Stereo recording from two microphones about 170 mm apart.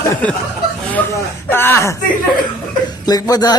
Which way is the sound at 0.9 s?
15° left (ahead or behind).